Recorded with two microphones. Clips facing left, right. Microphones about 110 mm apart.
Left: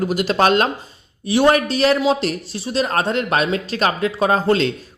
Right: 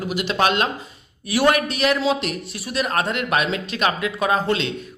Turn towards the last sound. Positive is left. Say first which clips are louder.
# left 4 dB
turn(degrees=40)  # may be behind; listen again after turning